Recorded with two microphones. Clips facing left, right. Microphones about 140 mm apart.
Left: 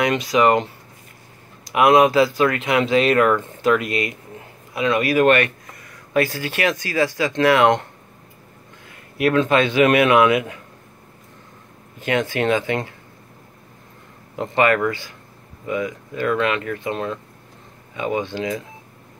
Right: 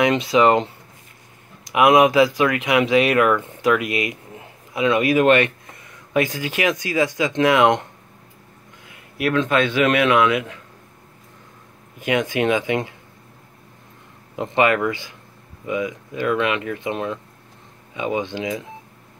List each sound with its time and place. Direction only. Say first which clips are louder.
0.0 s speech: right 1 dB; 25° right (ahead or behind)
9.2 s a man's voice: left 2 dB; 5° left (ahead or behind)
12.0 s speech: right 1 dB; 15° right (ahead or behind)
14.3 s speech: even; 15° right (ahead or behind)